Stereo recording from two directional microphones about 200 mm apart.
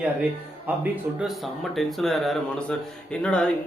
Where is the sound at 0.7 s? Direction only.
10° right (ahead or behind).